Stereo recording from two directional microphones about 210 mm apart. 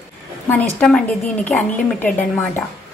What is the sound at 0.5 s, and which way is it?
A woman's voice, 5° left (ahead or behind).